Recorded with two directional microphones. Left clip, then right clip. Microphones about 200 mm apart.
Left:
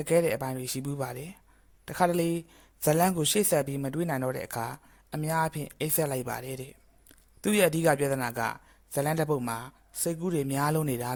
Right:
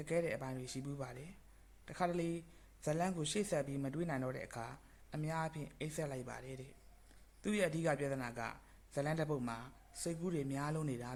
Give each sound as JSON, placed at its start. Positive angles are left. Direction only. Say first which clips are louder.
{"t": 0.0, "sound": "speech", "louder": "left 13 dB", "side_deg": 50}